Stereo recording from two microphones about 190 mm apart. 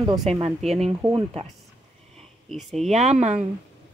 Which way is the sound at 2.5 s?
Centre (ahead or behind).